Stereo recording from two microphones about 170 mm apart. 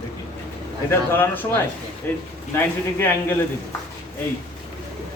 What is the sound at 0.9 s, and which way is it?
Speech, 10° left (ahead or behind).